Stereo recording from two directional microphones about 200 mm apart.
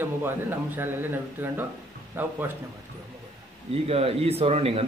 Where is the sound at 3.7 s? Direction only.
30° right (ahead or behind).